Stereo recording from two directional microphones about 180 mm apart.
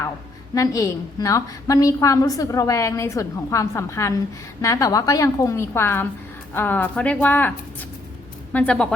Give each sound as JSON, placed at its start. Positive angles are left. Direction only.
{"t": 0.5, "sound": "a woman's voice", "side_deg": 20}
{"t": 8.5, "sound": "speech", "side_deg": 5}